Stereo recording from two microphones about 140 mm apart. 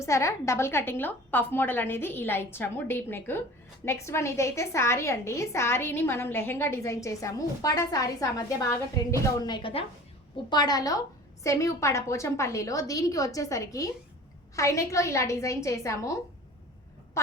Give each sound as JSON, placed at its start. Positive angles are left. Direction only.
{"t": 0.0, "sound": "a woman's voice", "side_deg": 20}